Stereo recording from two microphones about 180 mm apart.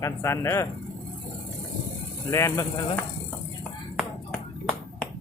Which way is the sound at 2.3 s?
15° left (ahead or behind).